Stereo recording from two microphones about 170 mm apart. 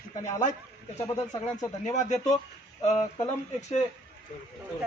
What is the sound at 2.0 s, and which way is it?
Speech, 45° left (ahead or behind).